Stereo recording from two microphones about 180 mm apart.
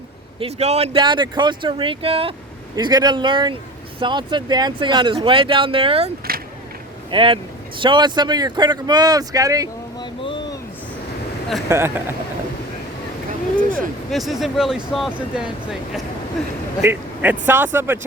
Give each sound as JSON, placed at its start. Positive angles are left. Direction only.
{"t": 0.3, "sound": "speech", "side_deg": -35}
{"t": 6.3, "sound": "a sound", "side_deg": -55}
{"t": 7.1, "sound": "speech", "side_deg": -30}
{"t": 10.0, "sound": "boat", "side_deg": 25}
{"t": 11.7, "sound": "speech", "side_deg": -15}
{"t": 13.6, "sound": "speech", "side_deg": -50}
{"t": 14.1, "sound": "speech", "side_deg": 0}